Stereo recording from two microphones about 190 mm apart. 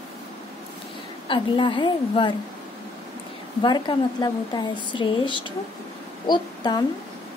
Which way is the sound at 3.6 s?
25° left (ahead or behind).